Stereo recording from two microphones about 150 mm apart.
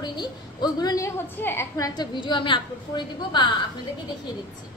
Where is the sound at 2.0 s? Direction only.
30° left (ahead or behind).